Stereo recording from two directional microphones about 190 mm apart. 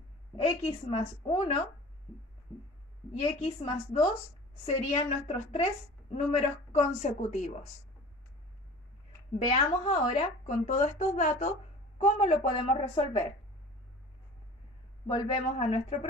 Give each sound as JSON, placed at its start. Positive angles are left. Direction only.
{"t": 0.4, "sound": "a woman's voice", "side_deg": 30}
{"t": 3.2, "sound": "speech", "side_deg": 30}
{"t": 9.5, "sound": "speech", "side_deg": 35}
{"t": 15.0, "sound": "speech", "side_deg": 30}